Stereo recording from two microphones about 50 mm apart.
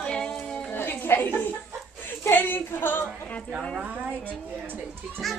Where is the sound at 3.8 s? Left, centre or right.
Right.